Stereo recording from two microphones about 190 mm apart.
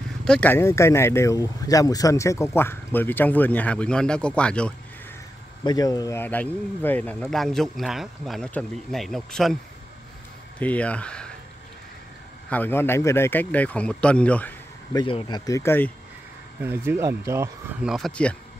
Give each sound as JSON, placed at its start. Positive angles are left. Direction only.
{"t": 0.2, "sound": "speech", "side_deg": 5}
{"t": 5.6, "sound": "speech", "side_deg": 20}
{"t": 10.6, "sound": "speech", "side_deg": 5}
{"t": 12.4, "sound": "speech", "side_deg": 10}
{"t": 15.0, "sound": "speech", "side_deg": 25}
{"t": 16.6, "sound": "speech", "side_deg": -10}
{"t": 17.8, "sound": "speech", "side_deg": 0}